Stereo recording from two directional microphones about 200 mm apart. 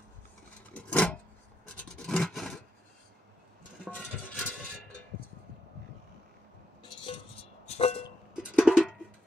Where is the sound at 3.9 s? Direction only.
5° left (ahead or behind).